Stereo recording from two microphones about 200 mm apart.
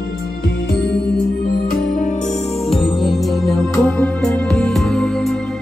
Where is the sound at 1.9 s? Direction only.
40° left (ahead or behind).